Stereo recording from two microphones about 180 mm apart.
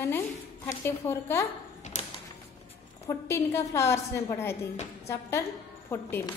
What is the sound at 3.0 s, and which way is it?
A woman's voice, 15° left (ahead or behind).